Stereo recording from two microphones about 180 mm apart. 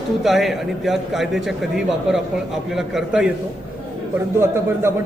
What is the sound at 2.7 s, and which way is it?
Speech, 5° right (ahead or behind).